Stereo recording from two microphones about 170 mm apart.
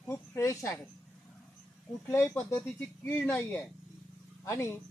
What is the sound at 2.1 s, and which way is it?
Speech, 15° left (ahead or behind).